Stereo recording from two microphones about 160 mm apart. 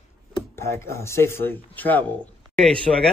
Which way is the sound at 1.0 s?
15° left (ahead or behind).